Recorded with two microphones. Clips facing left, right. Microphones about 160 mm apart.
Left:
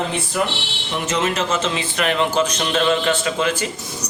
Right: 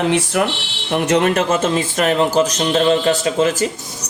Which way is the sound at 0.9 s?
60° right (ahead or behind).